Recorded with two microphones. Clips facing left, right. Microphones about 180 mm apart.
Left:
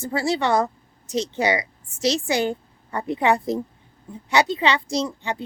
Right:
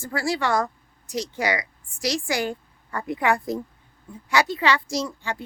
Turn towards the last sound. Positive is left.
turn(degrees=20)  # may be behind; listen again after turning